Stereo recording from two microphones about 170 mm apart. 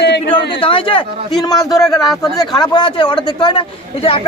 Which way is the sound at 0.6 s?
30° left (ahead or behind).